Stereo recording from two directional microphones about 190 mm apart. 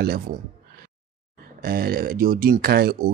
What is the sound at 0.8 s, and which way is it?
Speech, 55° right (ahead or behind).